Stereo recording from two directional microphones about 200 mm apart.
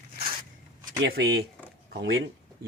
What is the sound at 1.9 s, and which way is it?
Speech, 65° right (ahead or behind).